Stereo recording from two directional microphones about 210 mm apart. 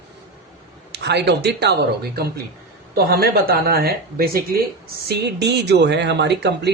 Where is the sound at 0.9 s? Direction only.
55° right (ahead or behind).